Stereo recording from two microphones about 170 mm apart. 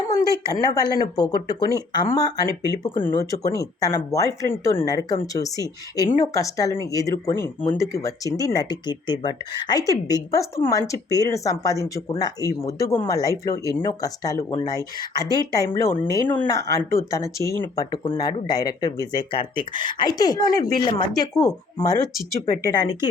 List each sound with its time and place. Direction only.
0.5 s speech: 20° left (ahead or behind)